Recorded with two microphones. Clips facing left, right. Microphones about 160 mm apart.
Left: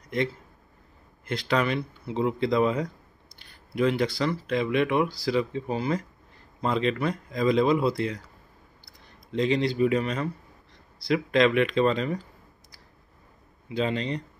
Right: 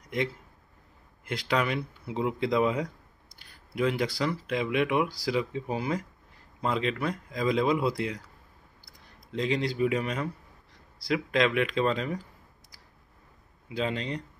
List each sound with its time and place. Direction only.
1.2 s speech: 10° right (ahead or behind)
9.3 s speech: 5° right (ahead or behind)
13.7 s speech: 5° right (ahead or behind)